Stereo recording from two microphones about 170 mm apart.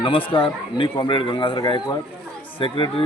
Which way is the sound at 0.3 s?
30° left (ahead or behind).